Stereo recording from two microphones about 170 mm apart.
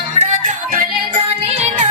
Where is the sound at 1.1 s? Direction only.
35° right (ahead or behind).